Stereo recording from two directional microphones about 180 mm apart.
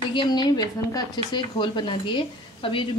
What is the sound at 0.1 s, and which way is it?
Speech, 25° left (ahead or behind).